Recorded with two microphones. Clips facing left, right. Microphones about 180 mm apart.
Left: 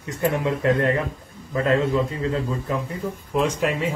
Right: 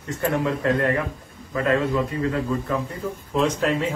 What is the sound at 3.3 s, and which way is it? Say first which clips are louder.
Speech: right 1 dB; 10° left (ahead or behind).